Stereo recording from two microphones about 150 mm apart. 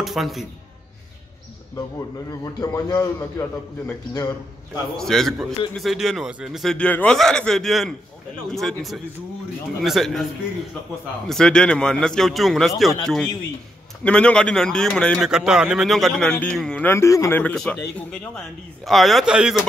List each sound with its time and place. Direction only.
0.0 s a man's voice: centre (ahead or behind)
2.0 s a man's voice: 20° left (ahead or behind)
4.9 s a man's voice: 5° left (ahead or behind)
11.2 s a man's voice: 5° left (ahead or behind)
16.9 s a man's voice: 20° left (ahead or behind)
17.4 s a man's voice: 10° left (ahead or behind)